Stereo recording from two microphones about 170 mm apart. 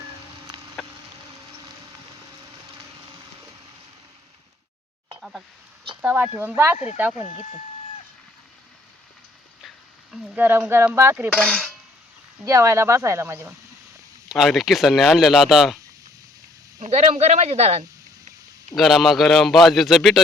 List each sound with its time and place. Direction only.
0.8 s a sound: centre (ahead or behind)
6.0 s speech: 10° right (ahead or behind)
6.7 s speech: 40° left (ahead or behind)
9.6 s a sound: centre (ahead or behind)
10.7 s speech: 15° right (ahead or behind)
11.3 s dishes: 5° left (ahead or behind)
12.5 s speech: 15° right (ahead or behind)
14.3 s speech: centre (ahead or behind)
16.8 s speech: 40° right (ahead or behind)
18.8 s speech: centre (ahead or behind)